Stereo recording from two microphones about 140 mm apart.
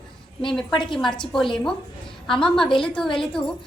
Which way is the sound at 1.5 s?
5° left (ahead or behind).